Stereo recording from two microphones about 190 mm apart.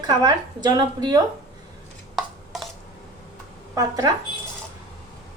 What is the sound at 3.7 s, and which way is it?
Speech, 20° right (ahead or behind).